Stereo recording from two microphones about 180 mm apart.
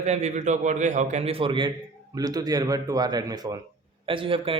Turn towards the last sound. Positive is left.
turn(degrees=-30)  # may be behind; listen again after turning